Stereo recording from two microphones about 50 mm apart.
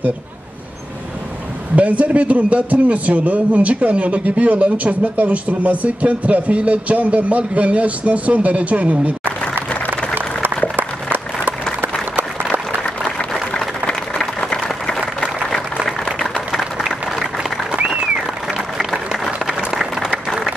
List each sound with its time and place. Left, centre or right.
1.8 s a man's voice: right
9.2 s applause: right
13.8 s applause: centre
16.2 s a sound: centre
18.8 s applause: centre